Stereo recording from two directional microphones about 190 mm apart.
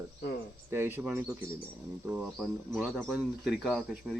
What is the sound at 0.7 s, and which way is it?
Speech, 10° right (ahead or behind).